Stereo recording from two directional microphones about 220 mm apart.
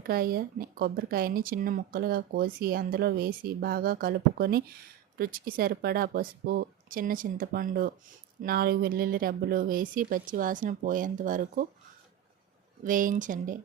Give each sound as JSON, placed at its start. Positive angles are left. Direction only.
{"t": 0.0, "sound": "speech", "side_deg": -45}
{"t": 12.8, "sound": "speech", "side_deg": -35}